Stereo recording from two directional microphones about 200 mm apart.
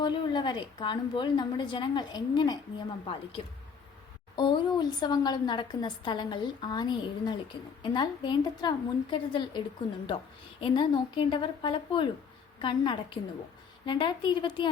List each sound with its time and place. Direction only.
0.0 s a woman's voice: 20° left (ahead or behind)
4.4 s a woman's voice: 25° left (ahead or behind)